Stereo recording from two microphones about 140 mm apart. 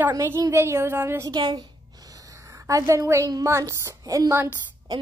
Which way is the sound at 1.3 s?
30° right (ahead or behind).